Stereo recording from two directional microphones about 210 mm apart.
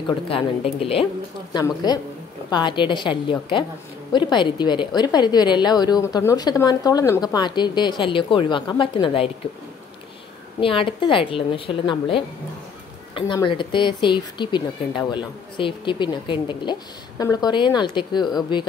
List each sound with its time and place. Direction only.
1.5 s a woman's voice: 20° left (ahead or behind)
10.6 s a woman's voice: 25° left (ahead or behind)